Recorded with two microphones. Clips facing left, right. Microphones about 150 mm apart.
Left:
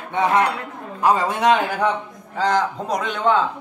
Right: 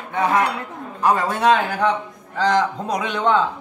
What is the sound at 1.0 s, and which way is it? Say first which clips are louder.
A man's voice: even; 10° left (ahead or behind).